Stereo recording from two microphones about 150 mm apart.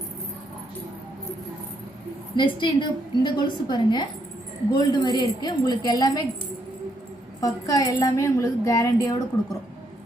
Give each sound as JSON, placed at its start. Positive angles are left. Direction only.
{"t": 2.3, "sound": "a woman's voice", "side_deg": 30}
{"t": 7.4, "sound": "a woman's voice", "side_deg": 25}